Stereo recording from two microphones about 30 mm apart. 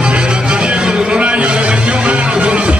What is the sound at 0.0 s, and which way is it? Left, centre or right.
Music, right.